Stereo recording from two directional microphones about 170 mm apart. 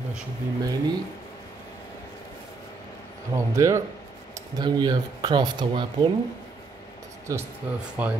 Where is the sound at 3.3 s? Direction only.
15° right (ahead or behind).